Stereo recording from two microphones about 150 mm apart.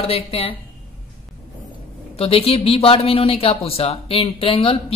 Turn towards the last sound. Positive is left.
turn(degrees=35)  # may be behind; listen again after turning